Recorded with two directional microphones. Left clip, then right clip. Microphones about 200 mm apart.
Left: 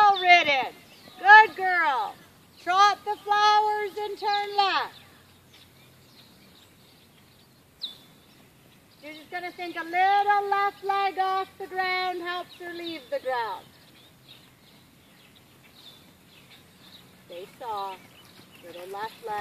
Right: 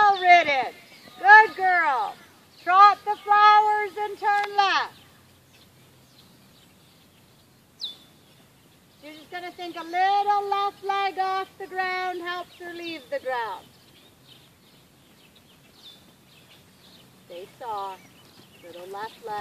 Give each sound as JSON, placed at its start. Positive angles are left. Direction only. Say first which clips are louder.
{"t": 0.0, "sound": "a sound", "louder": "right 1 dB", "side_deg": -45}
{"t": 9.0, "sound": "speech", "louder": "left 1 dB", "side_deg": -5}
{"t": 17.6, "sound": "speech", "louder": "right 1 dB", "side_deg": 15}
{"t": 18.9, "sound": "speech", "louder": "even", "side_deg": -5}